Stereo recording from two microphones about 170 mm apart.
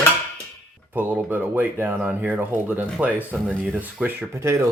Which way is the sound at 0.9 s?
10° right (ahead or behind).